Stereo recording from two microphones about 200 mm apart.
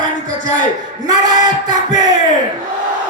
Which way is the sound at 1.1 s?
20° right (ahead or behind).